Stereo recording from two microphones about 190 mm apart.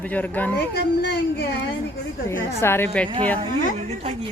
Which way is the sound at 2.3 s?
10° left (ahead or behind).